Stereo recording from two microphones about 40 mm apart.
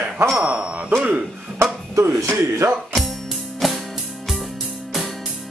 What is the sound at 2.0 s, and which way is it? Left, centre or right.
Speech, right.